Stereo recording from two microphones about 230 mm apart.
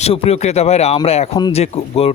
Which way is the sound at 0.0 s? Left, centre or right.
Left.